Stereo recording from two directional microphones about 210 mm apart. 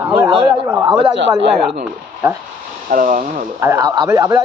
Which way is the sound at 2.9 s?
40° right (ahead or behind).